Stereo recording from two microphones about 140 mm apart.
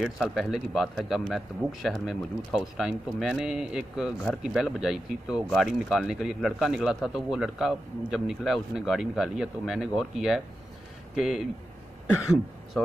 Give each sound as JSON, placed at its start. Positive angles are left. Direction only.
{"t": 0.0, "sound": "speech", "side_deg": 0}